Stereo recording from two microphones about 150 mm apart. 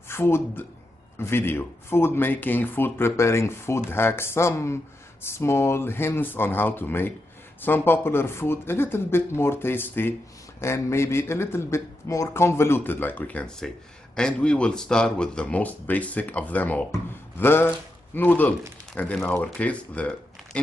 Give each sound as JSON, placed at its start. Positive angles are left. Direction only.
{"t": 0.1, "sound": "speech", "side_deg": 15}